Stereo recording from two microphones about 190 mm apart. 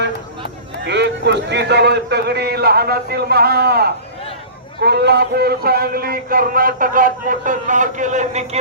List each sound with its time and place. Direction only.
0.9 s a man's voice: 65° right (ahead or behind); by 8.4 s 35° right (ahead or behind)